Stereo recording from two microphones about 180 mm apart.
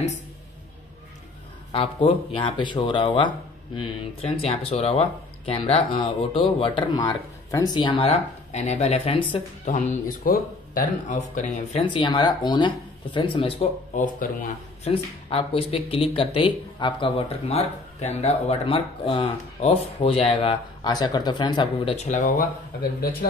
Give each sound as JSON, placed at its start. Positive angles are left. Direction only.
{"t": 1.7, "sound": "speech", "side_deg": 30}
{"t": 4.4, "sound": "speech", "side_deg": 35}
{"t": 11.8, "sound": "speech", "side_deg": 25}
{"t": 13.9, "sound": "speech", "side_deg": 45}
{"t": 14.9, "sound": "speech", "side_deg": 30}